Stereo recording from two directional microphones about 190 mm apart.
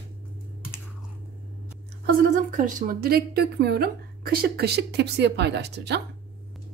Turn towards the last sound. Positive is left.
turn(degrees=-60)  # may be behind; listen again after turning